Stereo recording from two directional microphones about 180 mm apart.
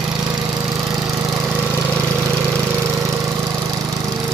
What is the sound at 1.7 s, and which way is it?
Engine, 10° left (ahead or behind).